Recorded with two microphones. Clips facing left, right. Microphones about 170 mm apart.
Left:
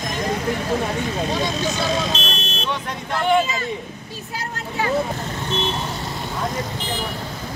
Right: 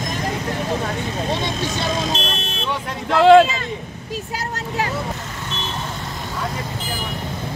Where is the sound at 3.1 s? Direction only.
90° right.